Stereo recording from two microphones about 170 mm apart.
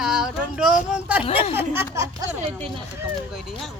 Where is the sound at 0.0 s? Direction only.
5° right (ahead or behind).